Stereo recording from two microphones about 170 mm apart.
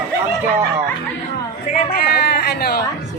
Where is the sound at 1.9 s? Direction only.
65° left (ahead or behind).